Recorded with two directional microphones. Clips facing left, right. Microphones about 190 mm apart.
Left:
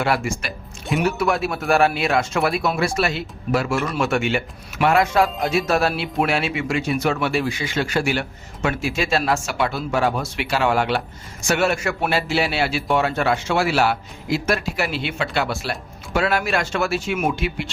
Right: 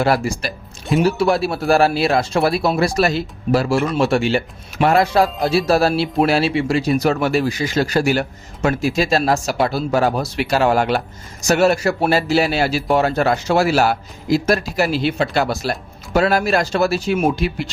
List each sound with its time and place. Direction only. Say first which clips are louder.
0.0 s speech: right 4 dB; 35° right (ahead or behind)